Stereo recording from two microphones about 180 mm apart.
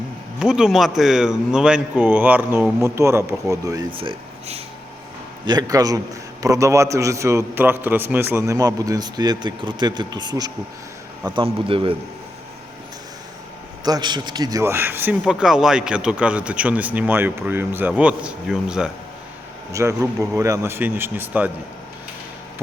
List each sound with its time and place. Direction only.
0.3 s a man's voice: 5° right (ahead or behind); by 3.8 s 20° right (ahead or behind)
3.9 s speech: 30° right (ahead or behind)
5.5 s a man's voice: 20° right (ahead or behind)
13.8 s a man's voice: 25° right (ahead or behind); by 18.9 s 5° right (ahead or behind)
19.7 s a man's voice: 15° right (ahead or behind)